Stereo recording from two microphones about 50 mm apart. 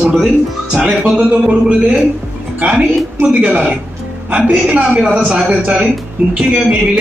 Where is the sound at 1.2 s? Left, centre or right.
Right.